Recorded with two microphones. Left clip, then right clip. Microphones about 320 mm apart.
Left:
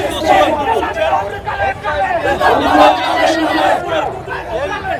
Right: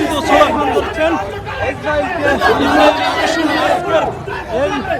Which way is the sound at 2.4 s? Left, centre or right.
Left.